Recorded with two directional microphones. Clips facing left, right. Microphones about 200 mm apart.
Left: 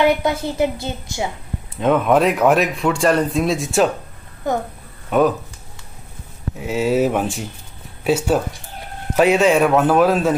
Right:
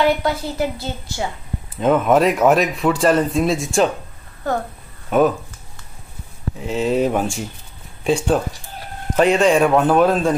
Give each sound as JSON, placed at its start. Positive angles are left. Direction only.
{"t": 0.0, "sound": "a woman's voice", "side_deg": 20}
{"t": 1.8, "sound": "speech", "side_deg": 0}
{"t": 5.1, "sound": "speech", "side_deg": 0}
{"t": 6.6, "sound": "speech", "side_deg": 10}